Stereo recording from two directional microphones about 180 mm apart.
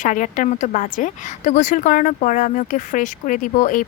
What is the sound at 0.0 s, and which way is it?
A woman's voice, 45° left (ahead or behind).